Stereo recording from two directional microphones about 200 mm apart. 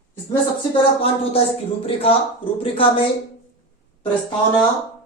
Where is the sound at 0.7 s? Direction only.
30° left (ahead or behind).